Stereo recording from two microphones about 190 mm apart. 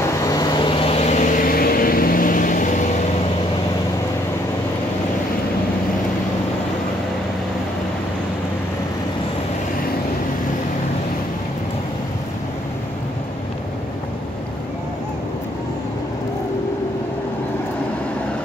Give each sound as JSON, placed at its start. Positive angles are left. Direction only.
{"t": 0.0, "sound": "vehicle", "side_deg": 20}